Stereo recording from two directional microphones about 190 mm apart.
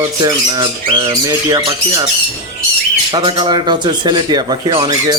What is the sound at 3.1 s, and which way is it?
Speech, 25° right (ahead or behind).